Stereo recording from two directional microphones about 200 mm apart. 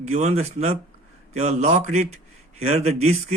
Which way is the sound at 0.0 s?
35° right (ahead or behind).